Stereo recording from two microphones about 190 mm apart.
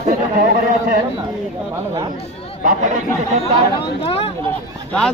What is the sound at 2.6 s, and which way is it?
Speech, 40° right (ahead or behind).